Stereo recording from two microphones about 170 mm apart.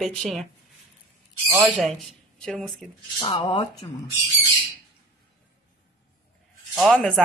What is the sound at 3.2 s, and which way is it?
Speech, 25° left (ahead or behind).